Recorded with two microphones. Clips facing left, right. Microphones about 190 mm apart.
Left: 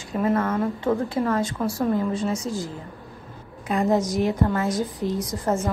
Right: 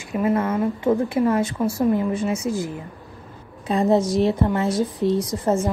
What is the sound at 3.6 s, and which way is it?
A woman's voice, 25° right (ahead or behind).